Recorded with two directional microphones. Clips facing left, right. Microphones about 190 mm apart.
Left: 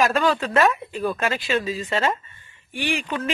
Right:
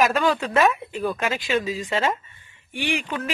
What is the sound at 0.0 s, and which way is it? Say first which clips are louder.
Speech: even; 15° right (ahead or behind).